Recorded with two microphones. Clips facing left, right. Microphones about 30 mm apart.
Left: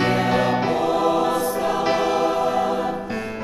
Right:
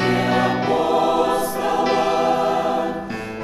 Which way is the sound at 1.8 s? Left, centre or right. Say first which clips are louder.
Right 4 dB; centre.